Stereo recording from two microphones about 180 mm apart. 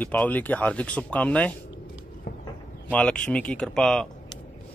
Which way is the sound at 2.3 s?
65° left (ahead or behind).